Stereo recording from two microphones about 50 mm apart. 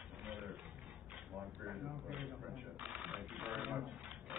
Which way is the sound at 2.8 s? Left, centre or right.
Centre.